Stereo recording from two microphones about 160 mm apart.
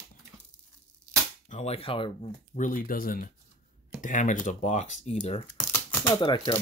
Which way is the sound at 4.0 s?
50° left (ahead or behind).